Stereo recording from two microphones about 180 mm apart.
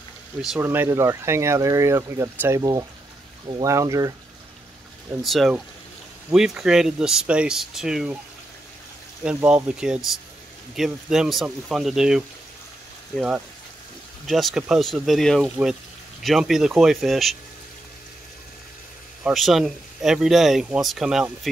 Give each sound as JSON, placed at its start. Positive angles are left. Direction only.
{"t": 0.4, "sound": "speech", "side_deg": 0}
{"t": 0.7, "sound": "speech", "side_deg": -15}
{"t": 5.2, "sound": "speech", "side_deg": 0}
{"t": 9.2, "sound": "speech", "side_deg": -5}
{"t": 14.2, "sound": "speech", "side_deg": 0}
{"t": 19.2, "sound": "speech", "side_deg": 0}